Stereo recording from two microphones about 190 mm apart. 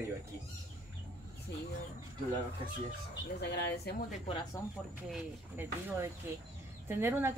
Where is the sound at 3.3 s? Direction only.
60° left (ahead or behind).